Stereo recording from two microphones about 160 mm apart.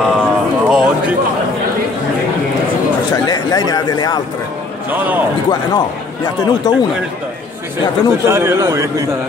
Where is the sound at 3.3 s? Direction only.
25° left (ahead or behind).